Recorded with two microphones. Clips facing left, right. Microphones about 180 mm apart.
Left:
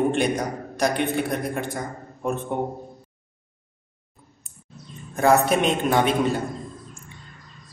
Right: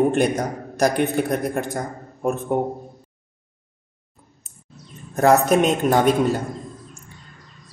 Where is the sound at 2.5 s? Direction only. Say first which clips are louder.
Right 6 dB; 40° right (ahead or behind).